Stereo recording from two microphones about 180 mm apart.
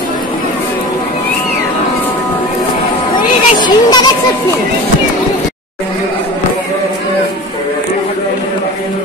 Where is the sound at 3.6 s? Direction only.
25° left (ahead or behind).